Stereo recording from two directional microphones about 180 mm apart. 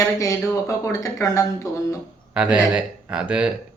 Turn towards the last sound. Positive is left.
turn(degrees=-5)  # may be behind; listen again after turning